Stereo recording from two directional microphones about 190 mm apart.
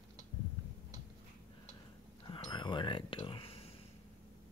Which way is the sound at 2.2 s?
25° left (ahead or behind).